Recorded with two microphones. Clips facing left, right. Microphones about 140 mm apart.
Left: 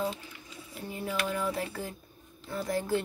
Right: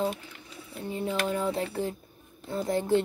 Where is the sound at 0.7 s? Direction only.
25° right (ahead or behind).